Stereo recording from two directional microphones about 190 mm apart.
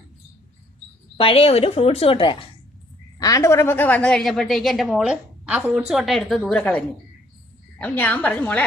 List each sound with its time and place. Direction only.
1.1 s a woman's voice: 30° left (ahead or behind); by 8.6 s 5° left (ahead or behind)